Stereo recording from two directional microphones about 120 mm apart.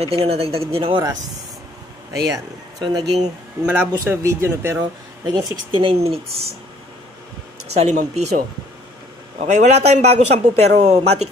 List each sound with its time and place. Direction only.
0.0 s a man's voice: 60° right (ahead or behind)
2.8 s speech: 35° right (ahead or behind)
3.2 s speech: 10° right (ahead or behind)
3.9 s speech: 25° right (ahead or behind)
5.2 s speech: 35° right (ahead or behind)
5.9 s a man's voice: 55° right (ahead or behind)
7.7 s speech: 75° right (ahead or behind)
9.4 s a man's voice: 65° right (ahead or behind)